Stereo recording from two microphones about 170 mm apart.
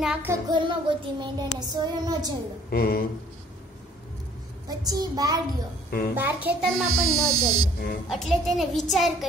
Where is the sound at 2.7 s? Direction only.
60° left (ahead or behind).